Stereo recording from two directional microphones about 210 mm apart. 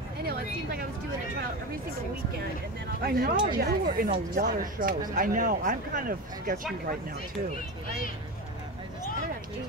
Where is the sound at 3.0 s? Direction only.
45° right (ahead or behind).